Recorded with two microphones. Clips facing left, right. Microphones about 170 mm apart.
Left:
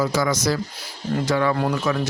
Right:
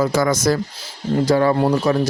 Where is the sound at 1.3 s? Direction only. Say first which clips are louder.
Right 5 dB; 35° right (ahead or behind).